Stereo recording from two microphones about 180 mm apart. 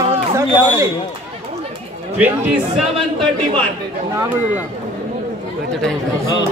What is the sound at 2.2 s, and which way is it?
Speech, 10° right (ahead or behind).